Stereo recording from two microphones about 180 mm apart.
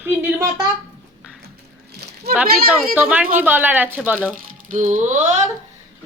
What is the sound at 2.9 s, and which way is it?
Speech, 10° right (ahead or behind).